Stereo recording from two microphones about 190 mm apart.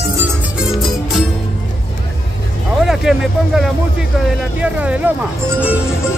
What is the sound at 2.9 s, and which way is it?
Speech, centre (ahead or behind).